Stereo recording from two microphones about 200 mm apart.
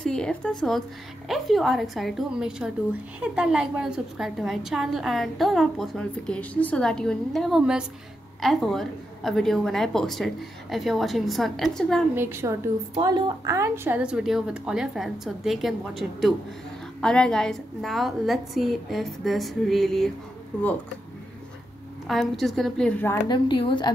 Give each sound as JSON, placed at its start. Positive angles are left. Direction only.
{"t": 0.0, "sound": "a woman's voice", "side_deg": 5}
{"t": 12.2, "sound": "a woman's voice", "side_deg": -10}
{"t": 22.0, "sound": "a woman's voice", "side_deg": 0}
{"t": 23.2, "sound": "a woman's voice", "side_deg": 25}